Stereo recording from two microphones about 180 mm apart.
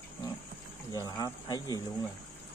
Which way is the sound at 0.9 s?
20° left (ahead or behind).